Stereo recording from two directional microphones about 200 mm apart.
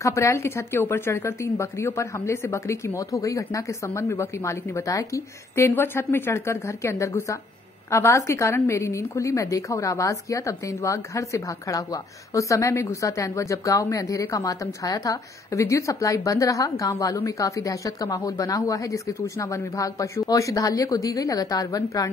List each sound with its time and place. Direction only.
0.0 s a woman's voice: 15° left (ahead or behind)